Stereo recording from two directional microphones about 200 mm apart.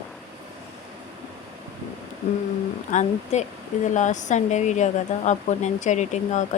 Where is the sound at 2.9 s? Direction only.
35° left (ahead or behind).